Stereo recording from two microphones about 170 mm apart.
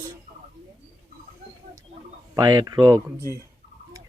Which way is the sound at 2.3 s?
20° right (ahead or behind).